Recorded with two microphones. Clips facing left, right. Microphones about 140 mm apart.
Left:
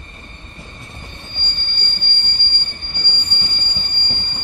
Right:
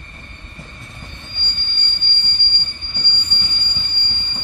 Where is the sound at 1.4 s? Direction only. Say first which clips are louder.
Left 2 dB; 50° left (ahead or behind).